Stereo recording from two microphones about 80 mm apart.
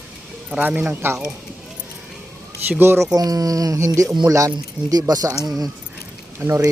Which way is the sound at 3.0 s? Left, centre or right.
Right.